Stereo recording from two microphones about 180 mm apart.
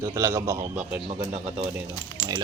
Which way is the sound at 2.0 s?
25° left (ahead or behind).